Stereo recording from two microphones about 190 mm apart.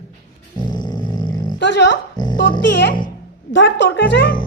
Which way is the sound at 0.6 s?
20° left (ahead or behind).